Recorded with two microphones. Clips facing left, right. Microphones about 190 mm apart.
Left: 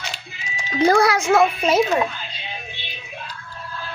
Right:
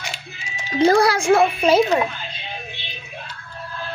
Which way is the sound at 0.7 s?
30° right (ahead or behind).